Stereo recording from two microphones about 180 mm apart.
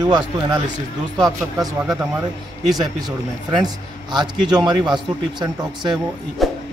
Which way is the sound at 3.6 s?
25° right (ahead or behind).